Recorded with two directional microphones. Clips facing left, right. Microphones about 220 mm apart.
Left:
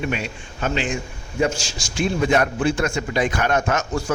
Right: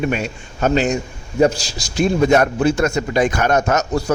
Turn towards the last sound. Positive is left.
turn(degrees=-40)  # may be behind; listen again after turning